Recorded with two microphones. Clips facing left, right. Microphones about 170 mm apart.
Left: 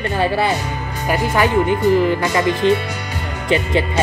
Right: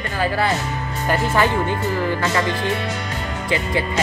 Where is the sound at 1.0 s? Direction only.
15° left (ahead or behind).